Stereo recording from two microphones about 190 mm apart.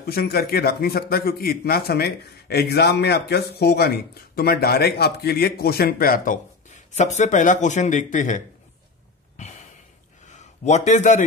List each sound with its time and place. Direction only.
0.0 s speech: 55° left (ahead or behind)
9.4 s a sound: 40° left (ahead or behind)
10.2 s speech: 35° left (ahead or behind)